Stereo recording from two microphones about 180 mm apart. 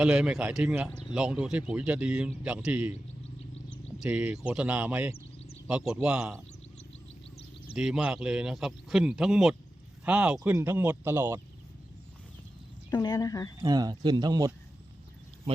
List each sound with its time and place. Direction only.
0.0 s a man's voice: 5° right (ahead or behind)
3.7 s a sound: 5° left (ahead or behind)
4.1 s a man's voice: 10° right (ahead or behind)
7.8 s a man's voice: 5° right (ahead or behind)
12.9 s a woman's voice: 20° left (ahead or behind)
13.6 s speech: 20° right (ahead or behind)